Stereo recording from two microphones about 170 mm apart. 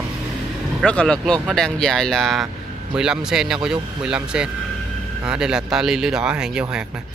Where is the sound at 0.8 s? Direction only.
5° left (ahead or behind).